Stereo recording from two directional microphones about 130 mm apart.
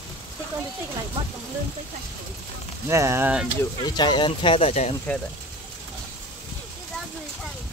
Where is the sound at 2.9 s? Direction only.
20° right (ahead or behind).